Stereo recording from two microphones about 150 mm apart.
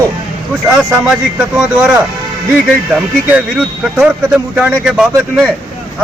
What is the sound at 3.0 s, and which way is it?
Speech, 5° right (ahead or behind).